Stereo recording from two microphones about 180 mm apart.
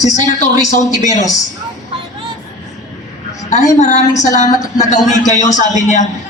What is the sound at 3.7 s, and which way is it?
A man's voice, 40° left (ahead or behind).